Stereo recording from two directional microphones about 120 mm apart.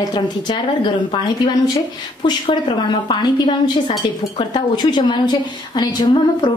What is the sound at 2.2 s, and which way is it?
A woman's voice, 40° left (ahead or behind).